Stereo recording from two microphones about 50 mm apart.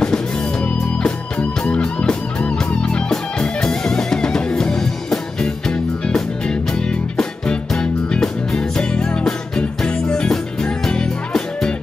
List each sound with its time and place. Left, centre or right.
0.0 s music: centre